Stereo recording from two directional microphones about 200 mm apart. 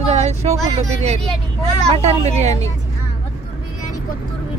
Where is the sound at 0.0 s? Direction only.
35° right (ahead or behind).